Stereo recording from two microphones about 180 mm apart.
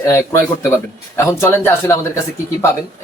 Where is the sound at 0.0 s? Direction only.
15° left (ahead or behind).